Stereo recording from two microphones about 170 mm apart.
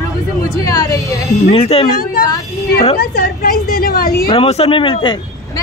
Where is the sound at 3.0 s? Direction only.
60° left (ahead or behind).